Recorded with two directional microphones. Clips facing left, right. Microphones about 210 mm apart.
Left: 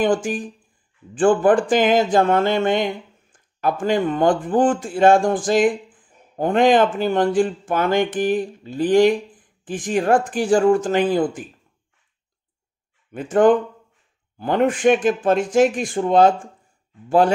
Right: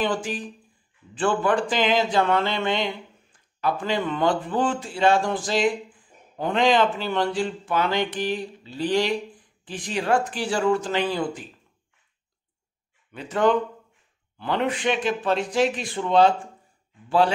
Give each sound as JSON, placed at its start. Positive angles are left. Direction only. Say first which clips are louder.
{"t": 0.0, "sound": "speech", "louder": "left 6 dB", "side_deg": 50}
{"t": 13.1, "sound": "speech", "louder": "left 6 dB", "side_deg": 50}